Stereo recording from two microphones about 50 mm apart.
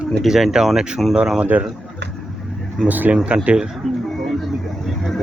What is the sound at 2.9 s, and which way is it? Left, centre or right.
Speech, right.